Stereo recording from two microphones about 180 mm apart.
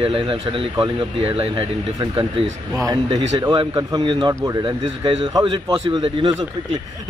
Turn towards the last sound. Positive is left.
turn(degrees=-25)  # may be behind; listen again after turning